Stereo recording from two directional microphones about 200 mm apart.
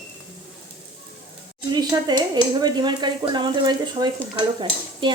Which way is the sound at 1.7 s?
20° right (ahead or behind).